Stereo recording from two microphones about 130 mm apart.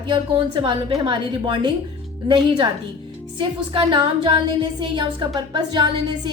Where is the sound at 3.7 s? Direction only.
40° right (ahead or behind).